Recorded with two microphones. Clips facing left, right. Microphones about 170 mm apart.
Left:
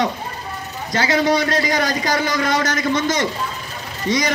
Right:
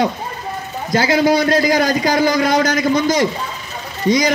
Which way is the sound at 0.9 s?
30° right (ahead or behind).